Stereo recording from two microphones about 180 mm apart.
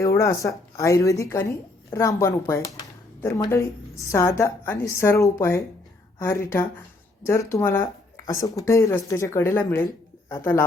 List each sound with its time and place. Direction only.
0.0 s a woman's voice: 15° left (ahead or behind)